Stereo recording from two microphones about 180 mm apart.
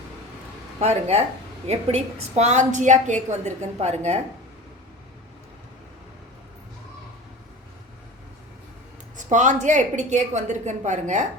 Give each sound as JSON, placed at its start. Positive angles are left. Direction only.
{"t": 0.8, "sound": "a woman's voice", "side_deg": -35}
{"t": 9.1, "sound": "a woman's voice", "side_deg": -45}